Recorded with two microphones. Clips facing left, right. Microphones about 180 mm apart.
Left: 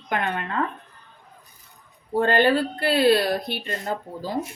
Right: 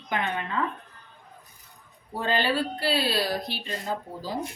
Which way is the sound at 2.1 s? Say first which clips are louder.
Left 7 dB; 55° left (ahead or behind).